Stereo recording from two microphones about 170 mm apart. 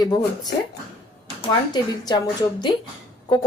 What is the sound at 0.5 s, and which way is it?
Speech, 70° left (ahead or behind).